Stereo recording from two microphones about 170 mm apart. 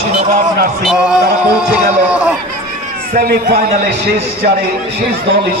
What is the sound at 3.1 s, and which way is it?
Speech, 60° right (ahead or behind).